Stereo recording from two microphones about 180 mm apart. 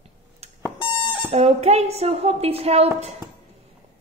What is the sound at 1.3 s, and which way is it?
A woman's voice, 35° right (ahead or behind).